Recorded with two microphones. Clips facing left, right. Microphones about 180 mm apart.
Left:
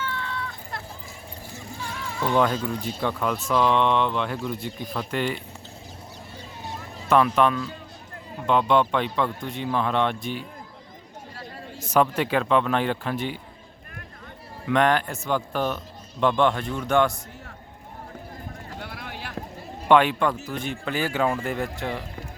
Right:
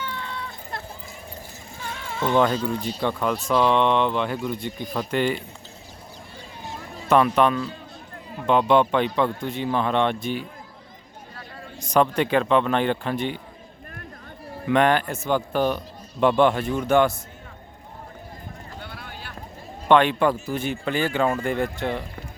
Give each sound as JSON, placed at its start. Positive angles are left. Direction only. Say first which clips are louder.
{"t": 0.0, "sound": "a sound", "louder": "left 1 dB", "side_deg": -15}
{"t": 2.3, "sound": "speech", "louder": "right 2 dB", "side_deg": 0}
{"t": 7.1, "sound": "speech", "louder": "right 1 dB", "side_deg": 0}
{"t": 11.8, "sound": "speech", "louder": "right 1 dB", "side_deg": 5}
{"t": 14.7, "sound": "speech", "louder": "right 2 dB", "side_deg": 0}
{"t": 18.8, "sound": "clip-clop", "louder": "left 4 dB", "side_deg": 75}
{"t": 19.9, "sound": "speech", "louder": "right 1 dB", "side_deg": 5}
{"t": 20.5, "sound": "speech", "louder": "right 4 dB", "side_deg": -5}